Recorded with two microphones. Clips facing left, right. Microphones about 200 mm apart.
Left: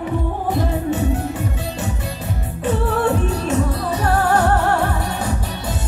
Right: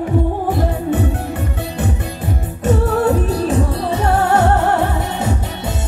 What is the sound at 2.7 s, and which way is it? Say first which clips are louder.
Music: right 4 dB; 40° right (ahead or behind).